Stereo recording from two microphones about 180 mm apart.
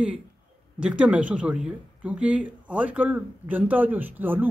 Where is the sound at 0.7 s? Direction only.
5° right (ahead or behind).